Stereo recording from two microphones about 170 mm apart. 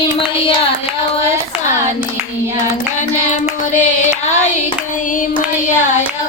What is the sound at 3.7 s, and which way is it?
Music, 45° left (ahead or behind).